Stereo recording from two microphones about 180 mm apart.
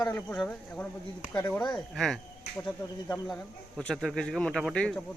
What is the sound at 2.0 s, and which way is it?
Speech, centre (ahead or behind).